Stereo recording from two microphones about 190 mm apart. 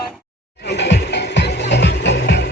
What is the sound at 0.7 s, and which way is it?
Music, 65° left (ahead or behind).